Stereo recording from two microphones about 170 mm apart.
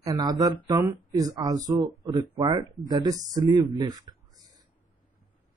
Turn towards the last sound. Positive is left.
turn(degrees=-25)  # may be behind; listen again after turning